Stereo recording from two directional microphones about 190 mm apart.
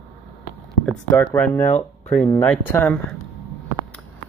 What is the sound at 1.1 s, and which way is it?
Speech, 10° left (ahead or behind).